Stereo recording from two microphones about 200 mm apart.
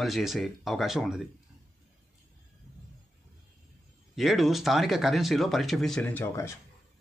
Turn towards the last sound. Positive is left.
turn(degrees=10)  # may be behind; listen again after turning